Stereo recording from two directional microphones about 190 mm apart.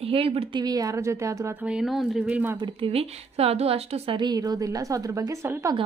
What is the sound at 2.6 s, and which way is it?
A woman's voice, 30° right (ahead or behind).